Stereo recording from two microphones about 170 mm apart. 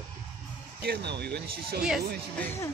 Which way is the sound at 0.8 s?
70° right (ahead or behind).